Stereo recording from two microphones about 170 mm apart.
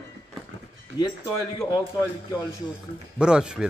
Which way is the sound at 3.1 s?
5° right (ahead or behind).